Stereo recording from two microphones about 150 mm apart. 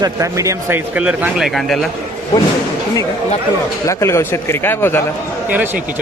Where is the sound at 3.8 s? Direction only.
20° left (ahead or behind).